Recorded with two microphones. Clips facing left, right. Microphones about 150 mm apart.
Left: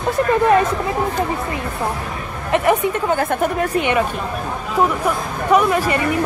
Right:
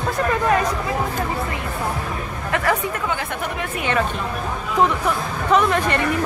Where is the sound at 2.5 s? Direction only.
20° left (ahead or behind).